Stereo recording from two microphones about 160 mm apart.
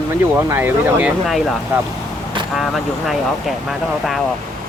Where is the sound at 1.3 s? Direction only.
Centre (ahead or behind).